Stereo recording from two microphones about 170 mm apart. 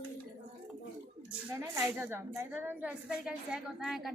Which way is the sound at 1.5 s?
15° right (ahead or behind).